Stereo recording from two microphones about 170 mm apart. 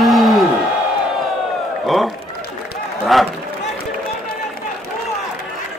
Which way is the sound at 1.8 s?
Centre (ahead or behind).